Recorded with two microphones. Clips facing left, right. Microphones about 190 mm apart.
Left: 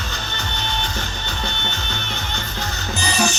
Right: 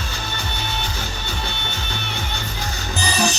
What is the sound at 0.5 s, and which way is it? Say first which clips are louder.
Music: left 1 dB; 10° right (ahead or behind).